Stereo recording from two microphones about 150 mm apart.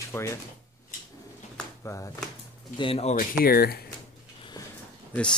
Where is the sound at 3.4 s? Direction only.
90° left.